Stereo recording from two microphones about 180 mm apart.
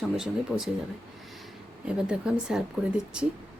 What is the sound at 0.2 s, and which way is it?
Speech, 5° right (ahead or behind).